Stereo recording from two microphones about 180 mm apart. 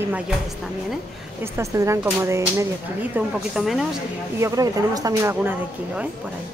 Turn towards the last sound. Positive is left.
turn(degrees=-10)  # may be behind; listen again after turning